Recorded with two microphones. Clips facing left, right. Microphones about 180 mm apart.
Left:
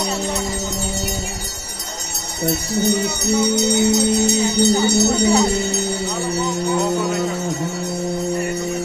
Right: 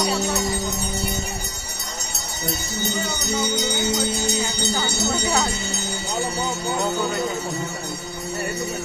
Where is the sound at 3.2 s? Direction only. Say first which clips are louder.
Left 8 dB; 70° left (ahead or behind).